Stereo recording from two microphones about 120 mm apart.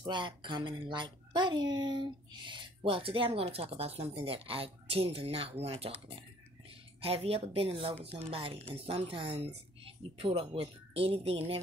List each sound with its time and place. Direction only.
0.0 s speech: 40° right (ahead or behind)